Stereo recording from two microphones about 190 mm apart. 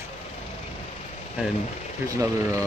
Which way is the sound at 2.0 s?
15° right (ahead or behind).